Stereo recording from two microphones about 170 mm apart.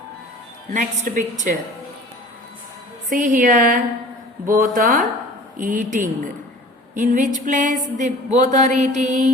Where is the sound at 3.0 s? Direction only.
50° right (ahead or behind).